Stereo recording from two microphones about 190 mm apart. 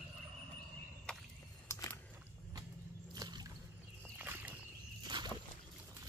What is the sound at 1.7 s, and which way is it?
Biting, 15° left (ahead or behind).